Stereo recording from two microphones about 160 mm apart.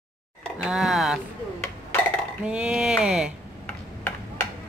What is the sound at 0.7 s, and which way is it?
Speech, 5° right (ahead or behind).